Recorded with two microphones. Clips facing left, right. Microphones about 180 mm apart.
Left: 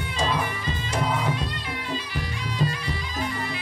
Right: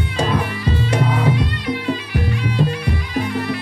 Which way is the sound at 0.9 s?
65° right (ahead or behind).